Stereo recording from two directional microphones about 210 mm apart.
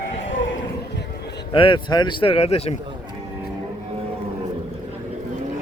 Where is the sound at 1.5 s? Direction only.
25° left (ahead or behind).